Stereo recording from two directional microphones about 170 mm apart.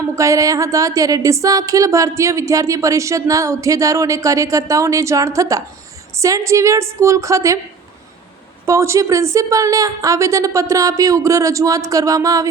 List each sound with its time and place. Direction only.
0.2 s a woman's voice: 20° right (ahead or behind)
8.6 s speech: 15° right (ahead or behind)